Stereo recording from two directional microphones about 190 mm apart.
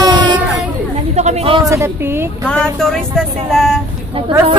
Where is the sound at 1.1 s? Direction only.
35° right (ahead or behind).